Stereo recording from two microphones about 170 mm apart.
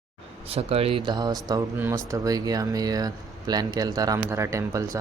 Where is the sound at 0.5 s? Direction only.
35° right (ahead or behind).